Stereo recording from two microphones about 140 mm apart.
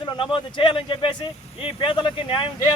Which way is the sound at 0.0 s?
35° left (ahead or behind).